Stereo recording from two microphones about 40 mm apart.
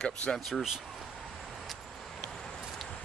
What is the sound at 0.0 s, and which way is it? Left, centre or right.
Speech, left.